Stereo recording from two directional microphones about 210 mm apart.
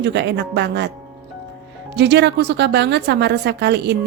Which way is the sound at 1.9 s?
55° right (ahead or behind).